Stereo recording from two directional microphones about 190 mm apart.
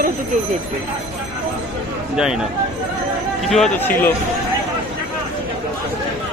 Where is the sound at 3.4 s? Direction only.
Centre (ahead or behind).